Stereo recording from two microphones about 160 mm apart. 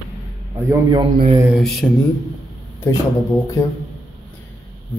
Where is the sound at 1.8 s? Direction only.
10° left (ahead or behind).